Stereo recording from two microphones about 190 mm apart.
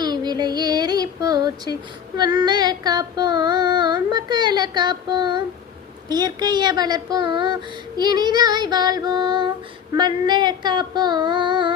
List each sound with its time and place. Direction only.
0.0 s female singing: 20° right (ahead or behind)